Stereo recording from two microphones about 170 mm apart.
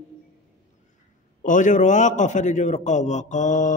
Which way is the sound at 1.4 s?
50° left (ahead or behind).